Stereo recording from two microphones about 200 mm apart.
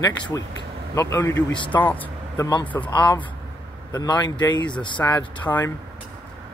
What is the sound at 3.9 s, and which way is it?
Speech, 20° left (ahead or behind).